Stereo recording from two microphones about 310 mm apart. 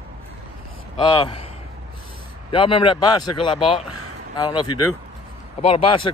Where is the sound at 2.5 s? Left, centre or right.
Centre.